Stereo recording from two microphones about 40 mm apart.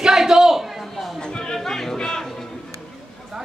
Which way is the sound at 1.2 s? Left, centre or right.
Left.